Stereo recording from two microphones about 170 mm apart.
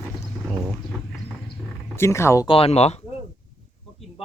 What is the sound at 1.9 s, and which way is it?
Speech, 15° left (ahead or behind).